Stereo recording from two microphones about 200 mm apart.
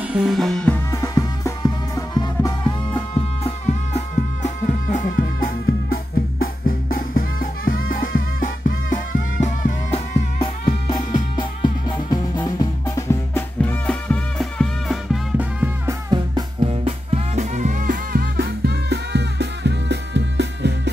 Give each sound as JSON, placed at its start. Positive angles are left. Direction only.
{"t": 0.1, "sound": "music", "side_deg": 0}
{"t": 0.9, "sound": "music", "side_deg": 15}
{"t": 5.1, "sound": "music", "side_deg": 55}
{"t": 16.1, "sound": "music", "side_deg": -20}
{"t": 16.6, "sound": "music", "side_deg": -30}